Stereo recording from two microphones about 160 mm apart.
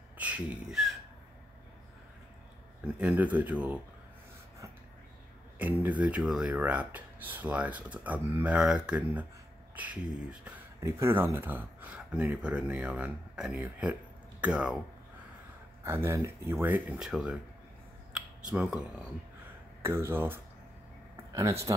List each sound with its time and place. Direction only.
0.2 s speech: 10° right (ahead or behind)
3.0 s speech: 10° right (ahead or behind)
5.6 s speech: 10° right (ahead or behind)
15.8 s speech: 15° right (ahead or behind)
18.5 s speech: 5° right (ahead or behind)